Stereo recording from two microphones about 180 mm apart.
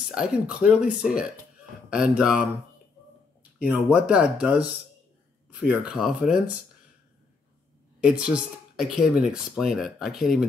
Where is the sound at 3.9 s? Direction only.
5° right (ahead or behind).